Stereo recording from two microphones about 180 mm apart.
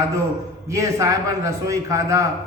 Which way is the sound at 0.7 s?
15° right (ahead or behind).